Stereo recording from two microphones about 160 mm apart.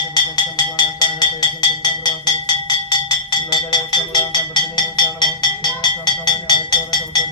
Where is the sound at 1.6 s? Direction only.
25° left (ahead or behind).